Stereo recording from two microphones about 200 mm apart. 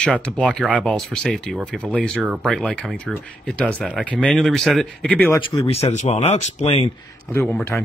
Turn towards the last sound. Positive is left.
turn(degrees=5)  # may be behind; listen again after turning